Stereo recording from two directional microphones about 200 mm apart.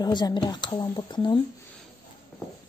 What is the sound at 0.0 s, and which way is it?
A child's voice, 20° left (ahead or behind).